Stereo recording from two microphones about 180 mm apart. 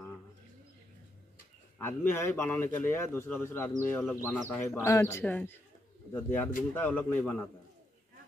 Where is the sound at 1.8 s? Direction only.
15° left (ahead or behind).